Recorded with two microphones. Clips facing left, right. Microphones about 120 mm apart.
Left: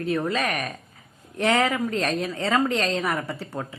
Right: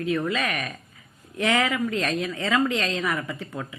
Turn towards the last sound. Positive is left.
turn(degrees=35)  # may be behind; listen again after turning